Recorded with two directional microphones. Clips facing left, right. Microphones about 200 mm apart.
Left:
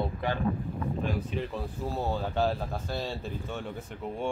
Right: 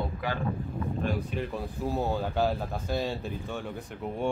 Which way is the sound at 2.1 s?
5° right (ahead or behind).